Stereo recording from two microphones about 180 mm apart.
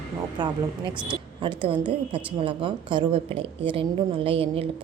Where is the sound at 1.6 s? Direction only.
30° right (ahead or behind).